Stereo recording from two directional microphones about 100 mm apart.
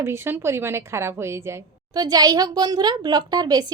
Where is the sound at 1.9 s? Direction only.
40° right (ahead or behind).